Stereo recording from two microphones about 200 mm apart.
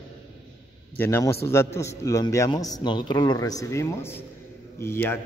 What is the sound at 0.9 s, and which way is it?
A man's voice, 10° left (ahead or behind).